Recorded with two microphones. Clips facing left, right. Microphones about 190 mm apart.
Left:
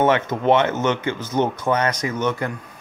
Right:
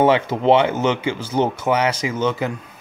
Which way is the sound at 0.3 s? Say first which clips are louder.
Right 2 dB; 30° right (ahead or behind).